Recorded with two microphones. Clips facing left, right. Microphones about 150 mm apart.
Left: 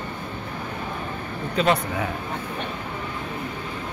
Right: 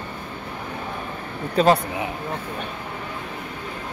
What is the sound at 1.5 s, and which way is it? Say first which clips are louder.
Speech: right 4 dB; 35° right (ahead or behind).